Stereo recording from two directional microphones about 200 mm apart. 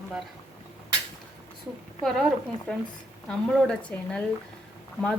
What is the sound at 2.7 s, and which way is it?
A woman's voice, 5° left (ahead or behind).